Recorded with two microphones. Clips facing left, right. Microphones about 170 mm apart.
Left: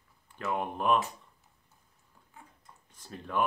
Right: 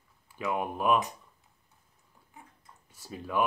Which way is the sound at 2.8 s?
10° right (ahead or behind).